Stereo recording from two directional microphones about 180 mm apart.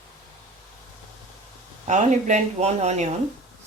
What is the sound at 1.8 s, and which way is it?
Speech, 40° right (ahead or behind).